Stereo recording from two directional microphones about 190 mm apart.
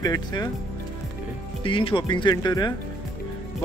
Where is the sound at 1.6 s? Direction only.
25° left (ahead or behind).